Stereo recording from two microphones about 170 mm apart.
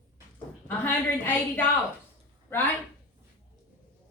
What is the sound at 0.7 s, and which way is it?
A woman's voice, 10° left (ahead or behind).